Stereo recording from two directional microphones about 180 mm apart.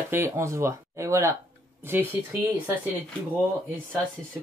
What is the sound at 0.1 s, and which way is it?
Speech, 15° right (ahead or behind).